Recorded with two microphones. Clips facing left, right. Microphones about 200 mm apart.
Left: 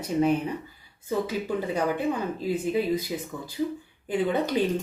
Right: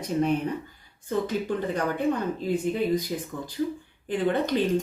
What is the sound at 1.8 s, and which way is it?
A woman's voice, 10° left (ahead or behind).